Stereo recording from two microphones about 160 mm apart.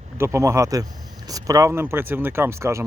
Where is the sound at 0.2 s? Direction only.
15° right (ahead or behind).